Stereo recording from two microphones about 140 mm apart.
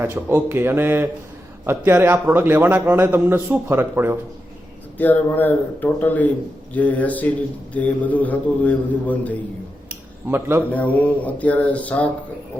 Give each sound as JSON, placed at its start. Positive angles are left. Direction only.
{"t": 0.0, "sound": "a man's voice", "side_deg": -15}
{"t": 4.9, "sound": "a man's voice", "side_deg": 10}
{"t": 10.2, "sound": "a man's voice", "side_deg": -15}
{"t": 10.7, "sound": "a man's voice", "side_deg": 10}